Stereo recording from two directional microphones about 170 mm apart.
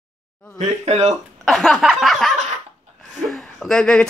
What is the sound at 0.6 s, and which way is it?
Speech, 40° right (ahead or behind).